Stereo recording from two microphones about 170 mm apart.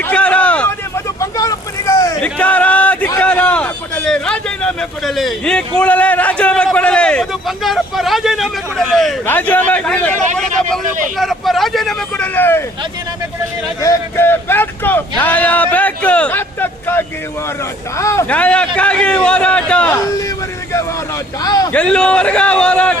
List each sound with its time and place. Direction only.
0.0 s a sound: 10° left (ahead or behind)
1.2 s vehicle: 20° left (ahead or behind)
2.2 s a sound: 10° left (ahead or behind)
3.2 s speech: 10° left (ahead or behind)
13.8 s speech: 15° left (ahead or behind)
21.4 s a man's voice: 20° left (ahead or behind)
21.7 s speech: 5° left (ahead or behind)